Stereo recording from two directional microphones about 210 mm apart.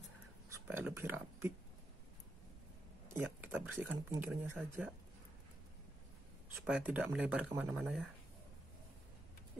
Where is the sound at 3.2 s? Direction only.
10° right (ahead or behind).